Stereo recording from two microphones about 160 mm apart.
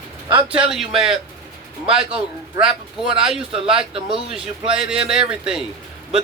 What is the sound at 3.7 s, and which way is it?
Speech, 35° right (ahead or behind).